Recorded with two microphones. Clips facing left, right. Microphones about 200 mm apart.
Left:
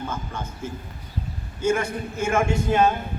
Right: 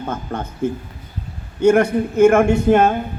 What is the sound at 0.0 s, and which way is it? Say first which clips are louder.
A man's voice: right 6 dB; 55° right (ahead or behind).